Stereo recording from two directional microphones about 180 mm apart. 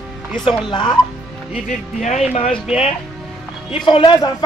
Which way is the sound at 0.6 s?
25° left (ahead or behind).